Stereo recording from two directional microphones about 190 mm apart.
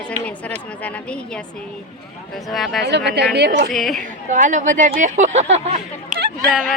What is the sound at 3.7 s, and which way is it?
Speech, centre (ahead or behind).